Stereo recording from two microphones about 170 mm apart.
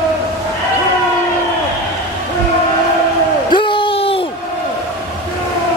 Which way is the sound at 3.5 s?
30° left (ahead or behind).